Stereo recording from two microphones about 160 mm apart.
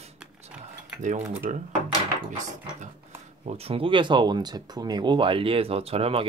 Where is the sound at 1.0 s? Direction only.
50° right (ahead or behind).